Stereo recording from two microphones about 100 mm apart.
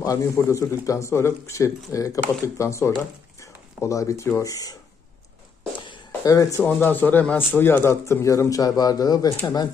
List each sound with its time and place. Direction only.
0.0 s speech: 35° left (ahead or behind)
6.2 s speech: 35° left (ahead or behind)
6.6 s speech: 20° left (ahead or behind); by 9.3 s 40° left (ahead or behind)